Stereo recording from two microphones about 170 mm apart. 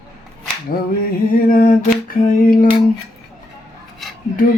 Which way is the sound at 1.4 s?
55° left (ahead or behind).